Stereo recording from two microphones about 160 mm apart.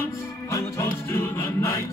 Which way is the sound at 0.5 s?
20° left (ahead or behind).